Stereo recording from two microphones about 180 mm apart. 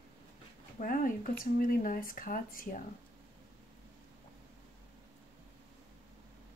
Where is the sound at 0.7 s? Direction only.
50° left (ahead or behind).